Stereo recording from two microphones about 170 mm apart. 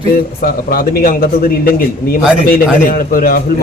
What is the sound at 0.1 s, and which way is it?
A man's voice, 60° left (ahead or behind).